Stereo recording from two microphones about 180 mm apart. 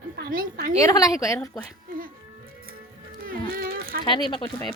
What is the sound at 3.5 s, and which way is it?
Speech, 55° right (ahead or behind).